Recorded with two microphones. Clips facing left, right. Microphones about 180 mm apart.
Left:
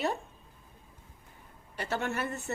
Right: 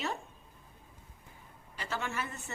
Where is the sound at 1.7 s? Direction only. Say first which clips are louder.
Left 4 dB; 60° left (ahead or behind).